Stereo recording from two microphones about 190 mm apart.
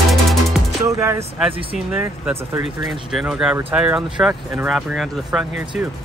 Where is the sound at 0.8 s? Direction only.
15° right (ahead or behind).